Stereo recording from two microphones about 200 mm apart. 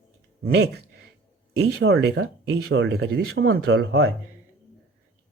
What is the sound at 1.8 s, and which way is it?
Speech, 80° right.